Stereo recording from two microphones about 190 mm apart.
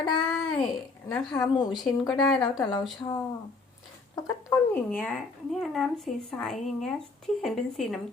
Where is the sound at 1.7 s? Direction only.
Centre (ahead or behind).